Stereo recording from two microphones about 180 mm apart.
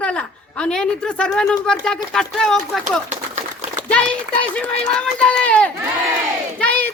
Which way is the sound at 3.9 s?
5° left (ahead or behind).